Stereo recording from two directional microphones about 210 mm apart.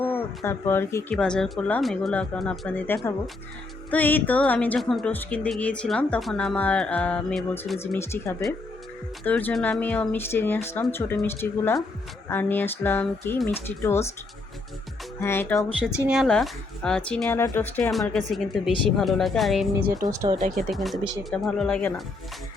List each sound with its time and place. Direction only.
0.0 s speech: 10° left (ahead or behind)
15.2 s speech: 10° left (ahead or behind)
16.0 s speech: centre (ahead or behind)
19.9 s speech: 15° right (ahead or behind)
20.7 s speech: centre (ahead or behind)